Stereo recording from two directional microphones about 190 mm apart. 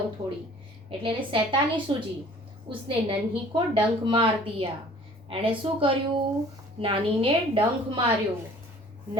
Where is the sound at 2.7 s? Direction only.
25° right (ahead or behind).